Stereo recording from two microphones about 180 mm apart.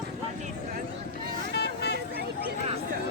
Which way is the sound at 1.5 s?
65° left (ahead or behind).